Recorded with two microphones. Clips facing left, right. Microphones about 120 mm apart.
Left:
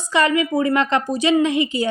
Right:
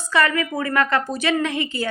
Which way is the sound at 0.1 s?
20° left (ahead or behind).